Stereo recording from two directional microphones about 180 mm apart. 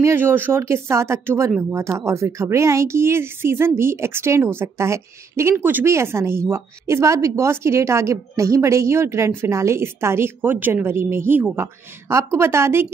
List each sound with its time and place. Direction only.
0.0 s speech: 10° right (ahead or behind)